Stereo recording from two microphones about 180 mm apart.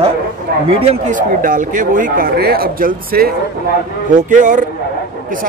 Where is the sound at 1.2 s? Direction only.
50° right (ahead or behind).